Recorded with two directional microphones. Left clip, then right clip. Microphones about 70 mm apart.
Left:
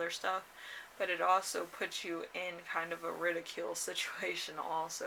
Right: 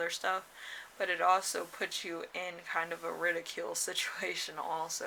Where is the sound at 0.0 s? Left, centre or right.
Right.